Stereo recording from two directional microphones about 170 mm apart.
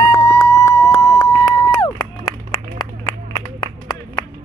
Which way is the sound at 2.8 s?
25° left (ahead or behind).